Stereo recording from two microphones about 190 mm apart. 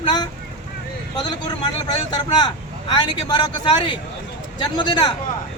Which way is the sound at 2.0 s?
20° left (ahead or behind).